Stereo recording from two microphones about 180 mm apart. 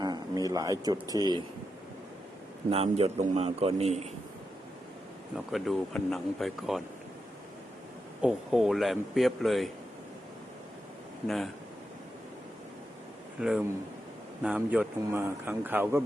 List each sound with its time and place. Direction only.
0.0 s a sound: 20° right (ahead or behind)
1.1 s speech: 25° right (ahead or behind)
2.6 s a man's voice: 35° right (ahead or behind)
5.5 s a man's voice: centre (ahead or behind)
8.2 s a man's voice: centre (ahead or behind)
13.4 s a man's voice: 5° right (ahead or behind)